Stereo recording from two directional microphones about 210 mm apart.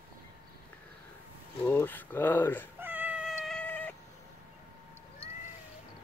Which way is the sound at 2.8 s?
10° right (ahead or behind).